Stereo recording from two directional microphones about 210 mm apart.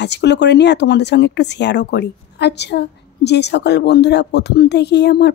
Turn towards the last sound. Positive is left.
turn(degrees=55)  # may be behind; listen again after turning